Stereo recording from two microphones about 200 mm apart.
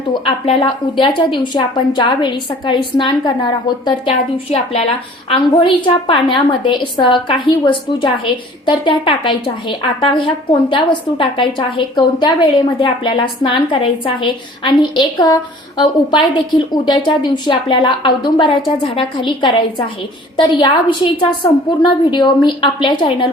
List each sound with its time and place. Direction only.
0.1 s a woman's voice: 25° left (ahead or behind)
5.3 s a woman's voice: 25° left (ahead or behind)